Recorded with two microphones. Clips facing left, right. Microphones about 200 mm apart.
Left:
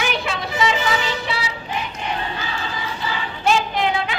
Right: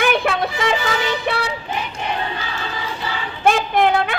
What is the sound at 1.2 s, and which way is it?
Music, 55° right (ahead or behind).